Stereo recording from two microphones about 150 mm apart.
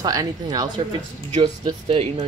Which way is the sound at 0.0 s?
25° right (ahead or behind).